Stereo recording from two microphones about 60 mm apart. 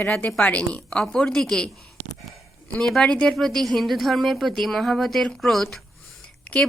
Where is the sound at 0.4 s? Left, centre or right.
Left.